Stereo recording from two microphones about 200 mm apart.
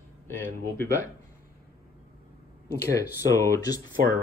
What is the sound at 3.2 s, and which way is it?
Speech, 15° left (ahead or behind).